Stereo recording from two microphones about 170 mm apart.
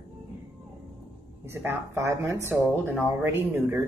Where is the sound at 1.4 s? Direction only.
15° right (ahead or behind).